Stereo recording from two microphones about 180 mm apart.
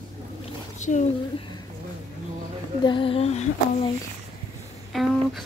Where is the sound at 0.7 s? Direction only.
40° left (ahead or behind).